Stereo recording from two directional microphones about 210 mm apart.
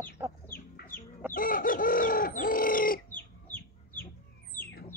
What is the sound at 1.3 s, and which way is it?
Chicken, 40° left (ahead or behind).